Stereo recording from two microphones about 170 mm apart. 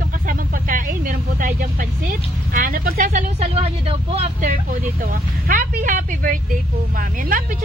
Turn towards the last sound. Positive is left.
turn(degrees=-50)  # may be behind; listen again after turning